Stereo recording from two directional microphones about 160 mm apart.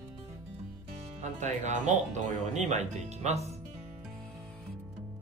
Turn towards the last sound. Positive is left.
turn(degrees=-45)  # may be behind; listen again after turning